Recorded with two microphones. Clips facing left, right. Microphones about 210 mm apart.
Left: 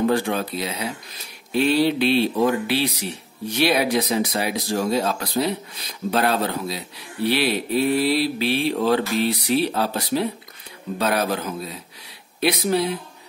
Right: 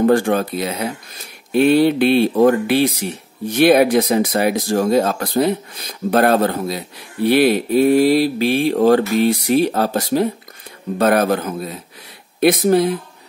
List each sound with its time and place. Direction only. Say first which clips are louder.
0.0 s speech: right 6 dB; 50° right (ahead or behind)